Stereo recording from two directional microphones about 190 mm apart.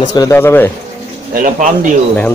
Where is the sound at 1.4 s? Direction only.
45° right (ahead or behind).